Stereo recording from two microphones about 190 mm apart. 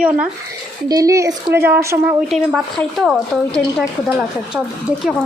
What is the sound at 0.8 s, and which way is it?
Speech, 20° right (ahead or behind).